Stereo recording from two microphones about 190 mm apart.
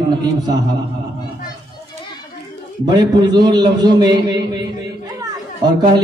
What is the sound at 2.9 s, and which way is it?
A man's voice, 25° right (ahead or behind).